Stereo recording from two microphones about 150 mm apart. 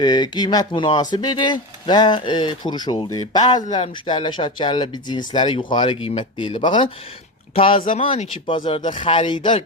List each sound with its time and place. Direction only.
0.0 s speech: 30° left (ahead or behind)